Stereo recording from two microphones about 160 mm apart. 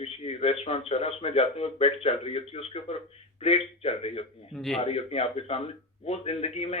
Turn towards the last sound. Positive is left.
turn(degrees=40)  # may be behind; listen again after turning